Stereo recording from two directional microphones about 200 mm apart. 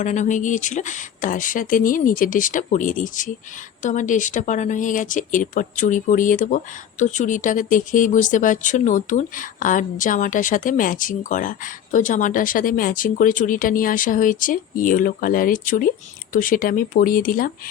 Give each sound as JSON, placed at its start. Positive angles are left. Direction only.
{"t": 0.0, "sound": "speech", "side_deg": 40}